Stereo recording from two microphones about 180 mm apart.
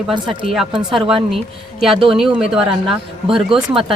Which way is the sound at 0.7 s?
25° right (ahead or behind).